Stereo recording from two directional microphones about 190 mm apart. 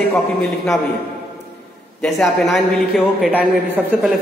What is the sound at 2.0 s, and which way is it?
A man's voice, centre (ahead or behind).